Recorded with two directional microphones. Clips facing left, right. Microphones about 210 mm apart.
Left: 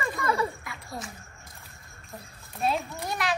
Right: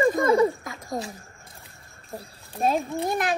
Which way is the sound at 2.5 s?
40° right (ahead or behind).